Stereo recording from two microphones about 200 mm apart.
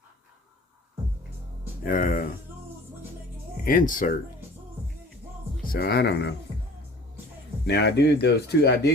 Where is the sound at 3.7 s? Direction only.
45° left (ahead or behind).